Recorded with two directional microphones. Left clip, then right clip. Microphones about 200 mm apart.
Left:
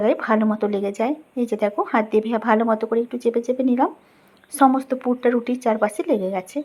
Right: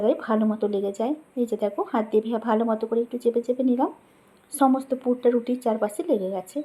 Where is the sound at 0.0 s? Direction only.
15° left (ahead or behind).